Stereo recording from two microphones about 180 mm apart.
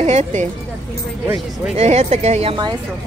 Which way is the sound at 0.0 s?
40° right (ahead or behind).